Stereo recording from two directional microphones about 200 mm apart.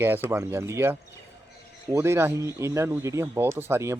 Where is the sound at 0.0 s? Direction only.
10° right (ahead or behind).